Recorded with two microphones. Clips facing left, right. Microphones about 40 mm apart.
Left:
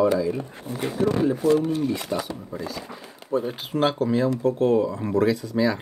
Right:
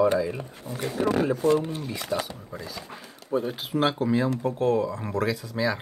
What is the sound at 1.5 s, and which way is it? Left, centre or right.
Speech, centre.